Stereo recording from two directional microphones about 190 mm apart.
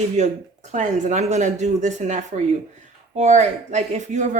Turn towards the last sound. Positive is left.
turn(degrees=-40)  # may be behind; listen again after turning